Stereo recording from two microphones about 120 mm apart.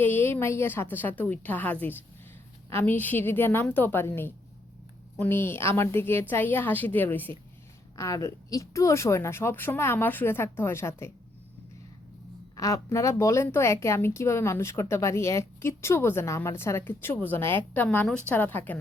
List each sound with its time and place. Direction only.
0.0 s a woman's voice: 20° left (ahead or behind)
7.9 s a woman's voice: 25° left (ahead or behind)
12.5 s a woman's voice: 30° left (ahead or behind)